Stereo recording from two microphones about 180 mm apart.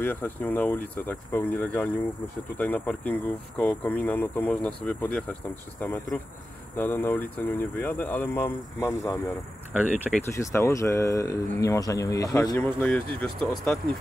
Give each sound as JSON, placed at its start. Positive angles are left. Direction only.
{"t": 0.0, "sound": "speech", "side_deg": 10}
{"t": 9.8, "sound": "speech", "side_deg": -10}
{"t": 10.2, "sound": "speech", "side_deg": 15}